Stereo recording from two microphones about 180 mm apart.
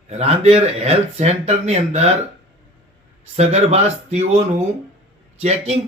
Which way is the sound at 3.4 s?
35° right (ahead or behind).